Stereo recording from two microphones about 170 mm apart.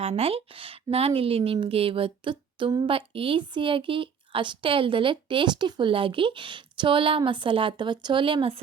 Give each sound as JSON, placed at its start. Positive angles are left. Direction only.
{"t": 0.0, "sound": "a woman's voice", "side_deg": -35}